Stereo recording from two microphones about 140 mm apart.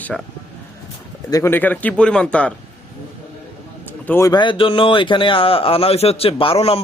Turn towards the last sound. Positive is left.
turn(degrees=45)  # may be behind; listen again after turning